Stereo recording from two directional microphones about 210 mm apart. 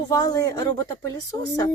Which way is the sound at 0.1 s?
15° left (ahead or behind).